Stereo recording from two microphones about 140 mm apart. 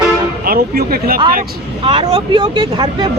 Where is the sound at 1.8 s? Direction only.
40° right (ahead or behind).